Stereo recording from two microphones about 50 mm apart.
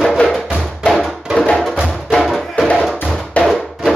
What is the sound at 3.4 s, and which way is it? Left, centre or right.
Music, left.